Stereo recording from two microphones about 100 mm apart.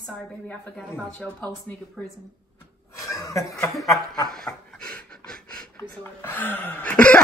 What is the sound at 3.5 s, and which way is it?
Speech, centre (ahead or behind).